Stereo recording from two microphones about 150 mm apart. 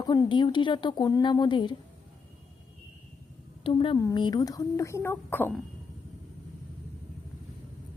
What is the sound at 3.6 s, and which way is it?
Speech, 35° left (ahead or behind).